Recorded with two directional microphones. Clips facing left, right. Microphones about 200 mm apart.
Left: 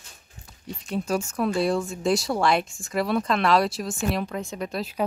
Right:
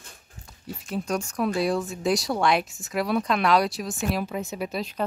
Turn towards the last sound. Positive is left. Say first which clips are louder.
# even
turn(degrees=-5)  # may be behind; listen again after turning